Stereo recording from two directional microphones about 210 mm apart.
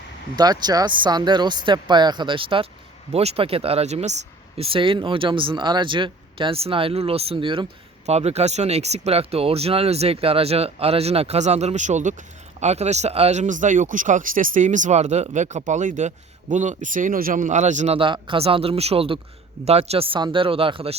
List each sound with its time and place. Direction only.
0.3 s speech: 20° right (ahead or behind)